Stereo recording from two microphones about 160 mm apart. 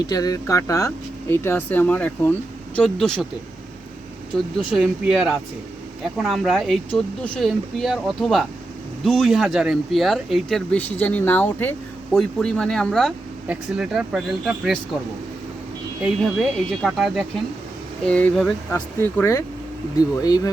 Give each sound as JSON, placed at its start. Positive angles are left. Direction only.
{"t": 0.0, "sound": "speech", "side_deg": 25}
{"t": 4.7, "sound": "speech", "side_deg": -5}
{"t": 16.0, "sound": "speech", "side_deg": 0}
{"t": 18.7, "sound": "speech", "side_deg": 15}